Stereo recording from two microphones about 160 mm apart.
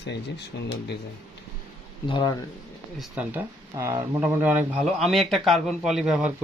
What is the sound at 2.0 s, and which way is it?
Speech, 30° left (ahead or behind).